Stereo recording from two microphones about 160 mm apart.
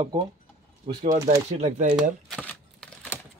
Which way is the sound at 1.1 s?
45° right (ahead or behind).